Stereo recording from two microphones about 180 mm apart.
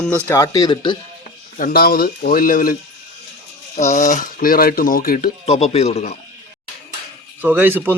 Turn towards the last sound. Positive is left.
turn(degrees=-10)  # may be behind; listen again after turning